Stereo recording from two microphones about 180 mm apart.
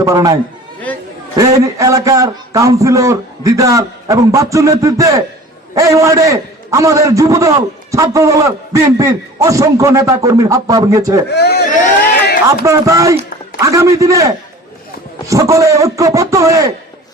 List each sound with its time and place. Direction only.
0.0 s a man's voice: 15° right (ahead or behind)
0.9 s chatter: 10° left (ahead or behind)
1.4 s a man's voice: 20° right (ahead or behind)
11.3 s speech: 65° left (ahead or behind)
12.6 s a man's voice: 15° right (ahead or behind)